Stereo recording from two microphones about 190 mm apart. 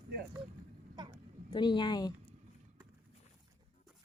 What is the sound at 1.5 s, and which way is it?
Speech, 25° left (ahead or behind).